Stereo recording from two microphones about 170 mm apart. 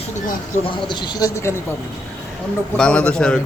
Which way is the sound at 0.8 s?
25° left (ahead or behind).